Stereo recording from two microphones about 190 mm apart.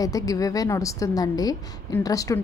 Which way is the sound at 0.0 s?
20° left (ahead or behind).